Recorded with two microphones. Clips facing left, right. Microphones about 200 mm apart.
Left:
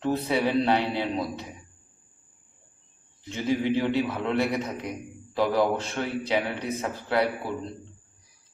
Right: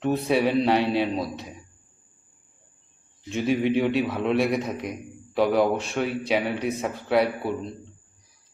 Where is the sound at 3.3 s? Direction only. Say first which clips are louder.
Right 3 dB; 20° right (ahead or behind).